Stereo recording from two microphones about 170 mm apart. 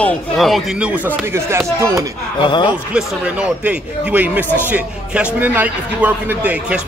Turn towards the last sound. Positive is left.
turn(degrees=-10)  # may be behind; listen again after turning